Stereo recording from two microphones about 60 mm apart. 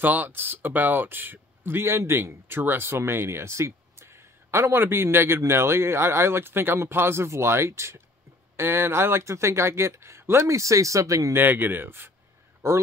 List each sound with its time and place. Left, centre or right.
0.0 s speech: right
11.3 s speech: right
12.6 s speech: right